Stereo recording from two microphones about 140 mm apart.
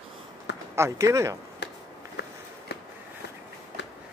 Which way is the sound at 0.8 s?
20° right (ahead or behind).